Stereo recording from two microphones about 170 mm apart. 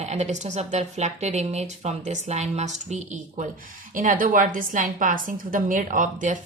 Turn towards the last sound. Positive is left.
turn(degrees=-50)  # may be behind; listen again after turning